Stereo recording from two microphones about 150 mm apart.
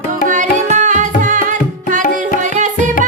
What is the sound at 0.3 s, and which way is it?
Tabla, 55° right (ahead or behind).